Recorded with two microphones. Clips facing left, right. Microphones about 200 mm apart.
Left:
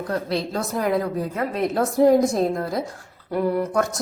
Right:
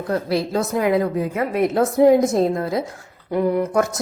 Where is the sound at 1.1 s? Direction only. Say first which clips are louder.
Right 3 dB; 15° right (ahead or behind).